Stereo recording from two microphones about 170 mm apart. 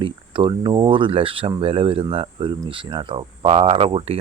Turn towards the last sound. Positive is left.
turn(degrees=-35)  # may be behind; listen again after turning